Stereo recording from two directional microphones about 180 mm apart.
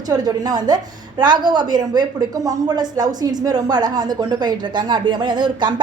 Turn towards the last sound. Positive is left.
turn(degrees=-25)  # may be behind; listen again after turning